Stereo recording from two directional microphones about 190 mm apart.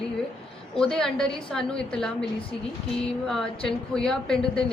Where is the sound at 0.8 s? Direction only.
5° left (ahead or behind).